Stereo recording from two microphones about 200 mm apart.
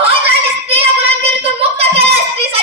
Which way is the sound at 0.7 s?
30° right (ahead or behind).